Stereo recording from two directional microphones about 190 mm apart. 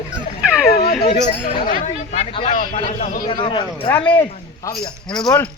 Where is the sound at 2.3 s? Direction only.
25° left (ahead or behind).